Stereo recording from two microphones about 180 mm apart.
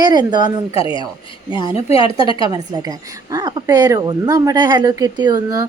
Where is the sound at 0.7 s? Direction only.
30° left (ahead or behind).